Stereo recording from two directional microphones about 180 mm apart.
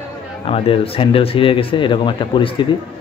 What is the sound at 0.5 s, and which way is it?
A man's voice, 30° left (ahead or behind).